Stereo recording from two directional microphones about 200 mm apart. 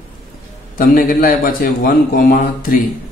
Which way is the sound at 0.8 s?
45° left (ahead or behind).